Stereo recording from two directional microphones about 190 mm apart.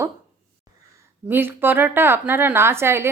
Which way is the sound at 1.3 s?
10° right (ahead or behind).